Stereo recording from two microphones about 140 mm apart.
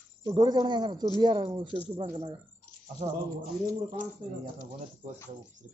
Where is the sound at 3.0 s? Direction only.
60° right (ahead or behind).